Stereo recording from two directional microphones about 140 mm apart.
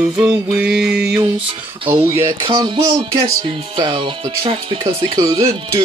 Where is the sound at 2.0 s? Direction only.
40° right (ahead or behind).